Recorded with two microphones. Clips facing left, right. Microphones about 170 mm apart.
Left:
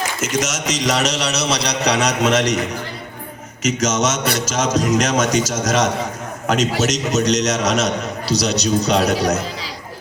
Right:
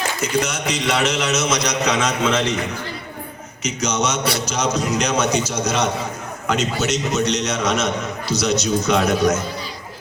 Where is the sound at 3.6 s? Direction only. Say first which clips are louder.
Left 3 dB; 90° left.